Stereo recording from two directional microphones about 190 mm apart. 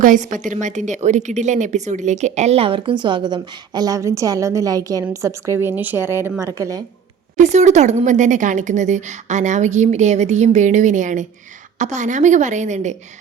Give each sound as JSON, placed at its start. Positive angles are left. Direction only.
{"t": 0.0, "sound": "a woman's voice", "side_deg": -45}
{"t": 7.3, "sound": "a woman's voice", "side_deg": -40}